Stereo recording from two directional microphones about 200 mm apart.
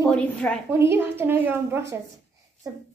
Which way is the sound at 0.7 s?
10° right (ahead or behind).